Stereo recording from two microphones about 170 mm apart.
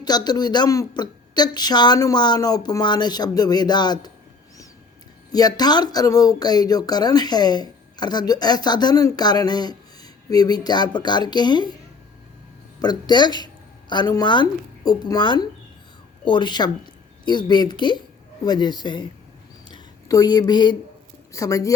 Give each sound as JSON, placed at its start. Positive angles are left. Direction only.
{"t": 0.0, "sound": "speech", "side_deg": 25}
{"t": 5.3, "sound": "speech", "side_deg": 25}
{"t": 12.8, "sound": "a woman's voice", "side_deg": 25}